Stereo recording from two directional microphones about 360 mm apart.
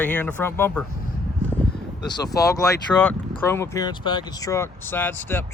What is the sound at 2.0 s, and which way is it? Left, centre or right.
Speech, centre.